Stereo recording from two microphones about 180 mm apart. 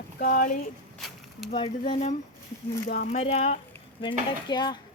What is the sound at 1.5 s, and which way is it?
Speech, 30° left (ahead or behind).